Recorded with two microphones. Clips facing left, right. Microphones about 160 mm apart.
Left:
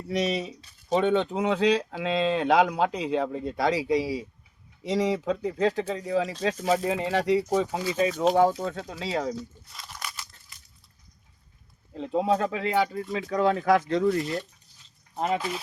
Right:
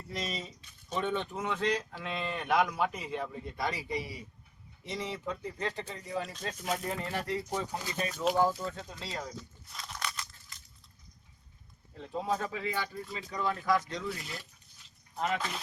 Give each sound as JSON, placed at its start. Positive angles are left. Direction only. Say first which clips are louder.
{"t": 0.1, "sound": "speech", "louder": "left 11 dB", "side_deg": 75}
{"t": 9.4, "sound": "a sound", "louder": "left 6 dB", "side_deg": 5}
{"t": 11.9, "sound": "speech", "louder": "left 9 dB", "side_deg": 85}
{"t": 15.1, "sound": "speech", "louder": "left 6 dB", "side_deg": 35}